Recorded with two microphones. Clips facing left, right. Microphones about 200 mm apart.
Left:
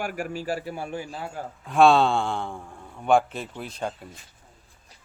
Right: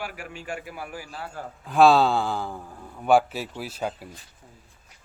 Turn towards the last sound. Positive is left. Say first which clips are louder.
# right 1 dB
turn(degrees=-5)  # may be behind; listen again after turning